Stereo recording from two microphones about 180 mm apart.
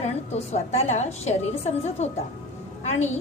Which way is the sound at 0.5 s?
40° left (ahead or behind).